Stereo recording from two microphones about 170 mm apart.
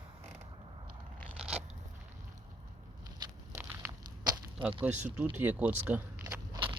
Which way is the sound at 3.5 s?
10° right (ahead or behind).